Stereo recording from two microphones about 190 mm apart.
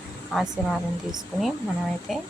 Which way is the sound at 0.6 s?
10° left (ahead or behind).